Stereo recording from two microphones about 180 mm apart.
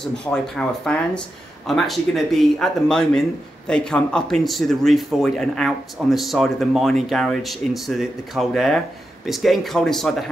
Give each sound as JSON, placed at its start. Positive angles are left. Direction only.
{"t": 0.0, "sound": "speech", "side_deg": 5}